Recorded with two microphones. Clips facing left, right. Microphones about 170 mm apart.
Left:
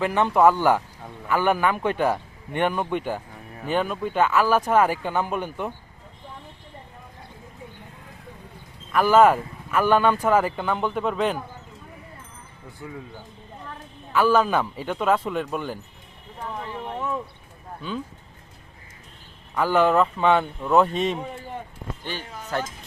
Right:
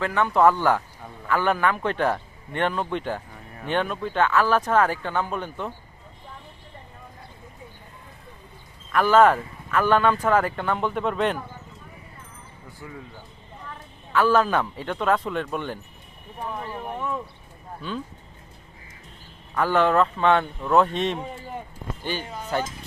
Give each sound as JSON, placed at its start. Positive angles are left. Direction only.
{"t": 0.0, "sound": "a man's voice", "side_deg": 20}
{"t": 8.9, "sound": "speech", "side_deg": 5}
{"t": 14.1, "sound": "speech", "side_deg": 5}
{"t": 19.5, "sound": "speech", "side_deg": 5}